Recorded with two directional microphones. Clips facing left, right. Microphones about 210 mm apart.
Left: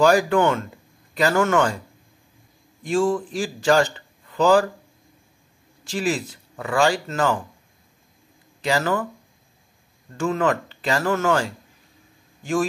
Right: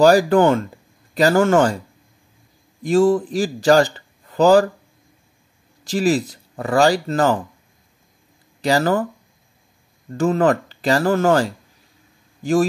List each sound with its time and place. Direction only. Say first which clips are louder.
0.0 s speech: right 4 dB; 35° right (ahead or behind)
2.8 s a man's voice: right 6 dB; 40° right (ahead or behind)
5.9 s speech: right 6 dB; 40° right (ahead or behind)
8.5 s speech: right 5 dB; 40° right (ahead or behind)
10.1 s speech: right 5 dB; 40° right (ahead or behind)